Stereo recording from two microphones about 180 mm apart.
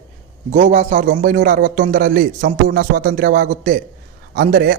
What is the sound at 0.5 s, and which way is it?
A man's voice, 40° right (ahead or behind).